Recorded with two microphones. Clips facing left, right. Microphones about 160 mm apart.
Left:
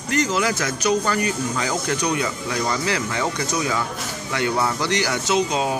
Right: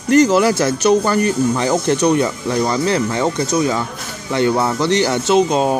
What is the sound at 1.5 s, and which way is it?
A man's voice, 30° right (ahead or behind).